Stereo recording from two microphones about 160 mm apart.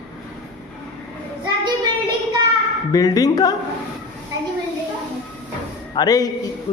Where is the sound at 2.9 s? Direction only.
20° left (ahead or behind).